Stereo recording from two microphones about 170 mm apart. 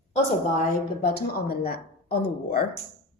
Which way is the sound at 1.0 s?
60° left (ahead or behind).